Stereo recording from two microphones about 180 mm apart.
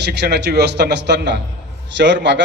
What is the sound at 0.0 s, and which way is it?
A man's voice, 65° right (ahead or behind).